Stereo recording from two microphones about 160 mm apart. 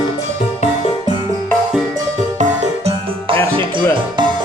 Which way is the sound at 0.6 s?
35° left (ahead or behind).